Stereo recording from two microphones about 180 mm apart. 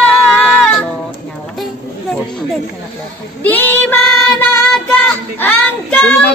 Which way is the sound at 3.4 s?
10° left (ahead or behind).